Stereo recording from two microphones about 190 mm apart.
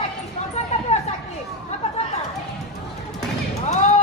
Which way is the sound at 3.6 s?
35° left (ahead or behind).